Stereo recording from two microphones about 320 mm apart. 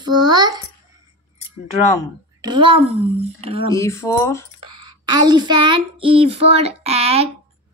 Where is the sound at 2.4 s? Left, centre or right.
Centre.